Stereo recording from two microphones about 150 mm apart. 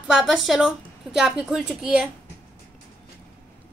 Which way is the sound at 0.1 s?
Centre (ahead or behind).